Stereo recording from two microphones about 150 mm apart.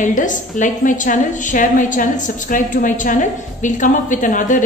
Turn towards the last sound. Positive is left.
turn(degrees=60)  # may be behind; listen again after turning